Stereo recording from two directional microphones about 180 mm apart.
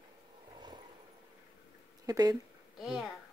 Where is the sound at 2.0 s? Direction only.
20° right (ahead or behind).